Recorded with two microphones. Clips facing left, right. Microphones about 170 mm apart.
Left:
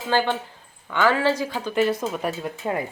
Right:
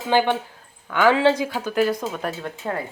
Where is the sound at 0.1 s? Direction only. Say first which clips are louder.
Right 3 dB; 15° right (ahead or behind).